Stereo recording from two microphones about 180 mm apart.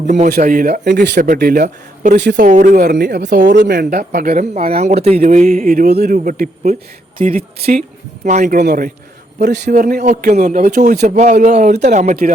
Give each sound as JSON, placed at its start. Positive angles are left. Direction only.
{"t": 0.3, "sound": "speech", "side_deg": -55}
{"t": 1.3, "sound": "speech", "side_deg": -55}
{"t": 3.0, "sound": "speech", "side_deg": -65}
{"t": 3.5, "sound": "speech", "side_deg": -60}
{"t": 8.2, "sound": "speech", "side_deg": -40}
{"t": 8.6, "sound": "speech", "side_deg": -55}
{"t": 9.4, "sound": "speech", "side_deg": -65}